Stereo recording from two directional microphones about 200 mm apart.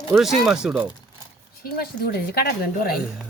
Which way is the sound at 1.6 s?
50° left (ahead or behind).